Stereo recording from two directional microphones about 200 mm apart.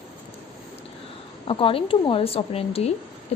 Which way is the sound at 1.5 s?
25° left (ahead or behind).